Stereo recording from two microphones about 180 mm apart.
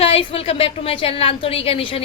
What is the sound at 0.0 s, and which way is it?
A woman's voice, 30° left (ahead or behind).